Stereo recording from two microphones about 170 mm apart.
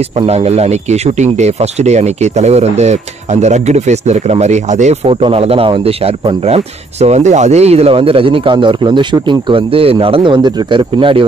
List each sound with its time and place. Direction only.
0.3 s speech: 40° right (ahead or behind)